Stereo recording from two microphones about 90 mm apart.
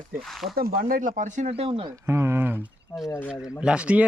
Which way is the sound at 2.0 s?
30° right (ahead or behind).